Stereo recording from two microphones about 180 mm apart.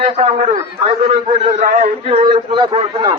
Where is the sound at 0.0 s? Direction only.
40° right (ahead or behind).